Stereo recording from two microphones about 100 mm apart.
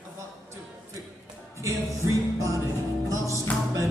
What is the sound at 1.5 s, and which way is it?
Music, 30° right (ahead or behind).